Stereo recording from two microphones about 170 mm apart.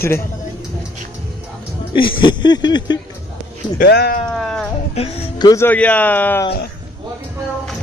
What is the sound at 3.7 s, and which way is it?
Speech, 70° left (ahead or behind).